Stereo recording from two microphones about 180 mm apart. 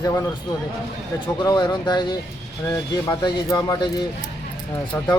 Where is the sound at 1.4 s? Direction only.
25° left (ahead or behind).